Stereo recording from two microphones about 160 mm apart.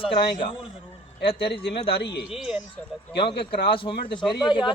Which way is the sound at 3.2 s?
30° left (ahead or behind).